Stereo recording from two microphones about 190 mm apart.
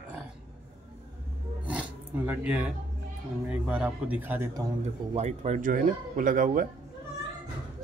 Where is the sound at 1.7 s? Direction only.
5° right (ahead or behind).